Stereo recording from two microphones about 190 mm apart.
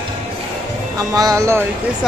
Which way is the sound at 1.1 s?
20° right (ahead or behind).